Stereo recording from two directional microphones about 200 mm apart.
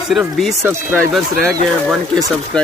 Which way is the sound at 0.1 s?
Centre (ahead or behind).